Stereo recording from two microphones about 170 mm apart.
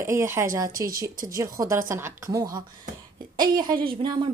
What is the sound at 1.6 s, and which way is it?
A woman's voice, 15° right (ahead or behind).